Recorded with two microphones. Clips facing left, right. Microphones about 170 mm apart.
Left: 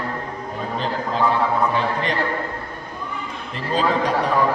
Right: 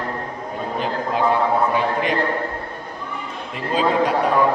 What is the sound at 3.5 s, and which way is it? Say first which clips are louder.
Speech: right 2 dB; 5° right (ahead or behind).